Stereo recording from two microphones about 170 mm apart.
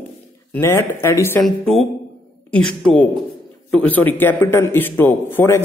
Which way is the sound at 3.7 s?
10° left (ahead or behind).